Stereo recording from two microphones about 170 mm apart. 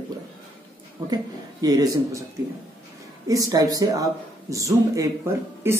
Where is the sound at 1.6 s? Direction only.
20° right (ahead or behind).